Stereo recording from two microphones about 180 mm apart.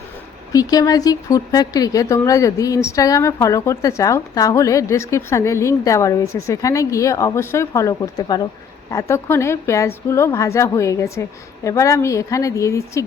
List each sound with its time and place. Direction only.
0.5 s speech: 20° left (ahead or behind)